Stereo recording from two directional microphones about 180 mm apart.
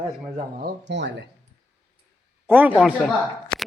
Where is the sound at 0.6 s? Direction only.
75° right (ahead or behind).